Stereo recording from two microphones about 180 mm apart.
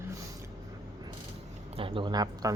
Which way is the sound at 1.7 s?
30° right (ahead or behind).